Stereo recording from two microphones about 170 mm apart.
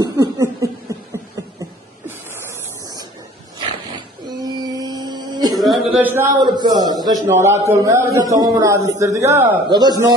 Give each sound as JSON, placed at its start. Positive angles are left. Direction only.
{"t": 0.0, "sound": "chuckle", "side_deg": -20}
{"t": 4.4, "sound": "a sound", "side_deg": -20}
{"t": 5.9, "sound": "a man's voice", "side_deg": -10}
{"t": 6.4, "sound": "a man's voice", "side_deg": -25}
{"t": 9.7, "sound": "a man's voice", "side_deg": -25}